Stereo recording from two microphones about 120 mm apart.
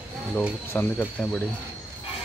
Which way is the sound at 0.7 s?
15° left (ahead or behind).